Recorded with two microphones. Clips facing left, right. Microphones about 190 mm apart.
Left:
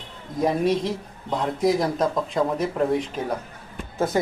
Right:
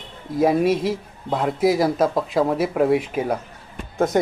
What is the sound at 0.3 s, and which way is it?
Speech, 5° right (ahead or behind).